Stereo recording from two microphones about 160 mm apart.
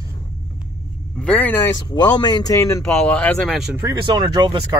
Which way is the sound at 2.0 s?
25° left (ahead or behind).